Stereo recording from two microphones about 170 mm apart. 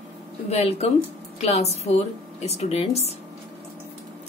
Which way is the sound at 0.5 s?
40° left (ahead or behind).